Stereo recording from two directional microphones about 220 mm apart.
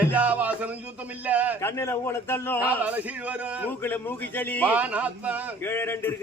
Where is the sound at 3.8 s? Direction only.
10° left (ahead or behind).